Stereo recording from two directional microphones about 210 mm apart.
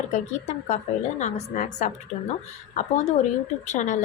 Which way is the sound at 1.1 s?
35° left (ahead or behind).